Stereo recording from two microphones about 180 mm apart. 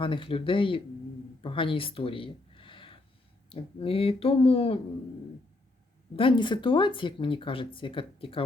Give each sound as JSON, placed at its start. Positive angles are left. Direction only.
{"t": 0.0, "sound": "speech", "side_deg": 30}
{"t": 6.1, "sound": "speech", "side_deg": 30}